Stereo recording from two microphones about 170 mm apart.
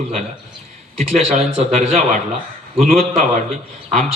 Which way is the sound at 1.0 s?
40° right (ahead or behind).